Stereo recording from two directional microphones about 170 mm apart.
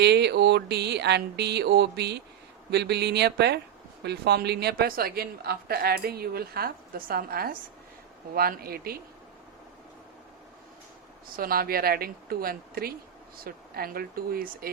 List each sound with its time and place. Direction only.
0.0 s a sound: 80° right
2.6 s a woman's voice: 80° right; by 9.0 s 60° right (ahead or behind)
11.3 s a woman's voice: 60° right (ahead or behind)